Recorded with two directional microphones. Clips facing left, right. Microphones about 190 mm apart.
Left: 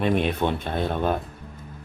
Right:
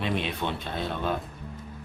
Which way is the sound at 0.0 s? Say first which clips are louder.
Left 7 dB; 50° left (ahead or behind).